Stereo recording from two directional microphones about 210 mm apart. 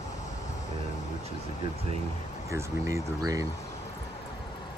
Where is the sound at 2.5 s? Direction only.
15° right (ahead or behind).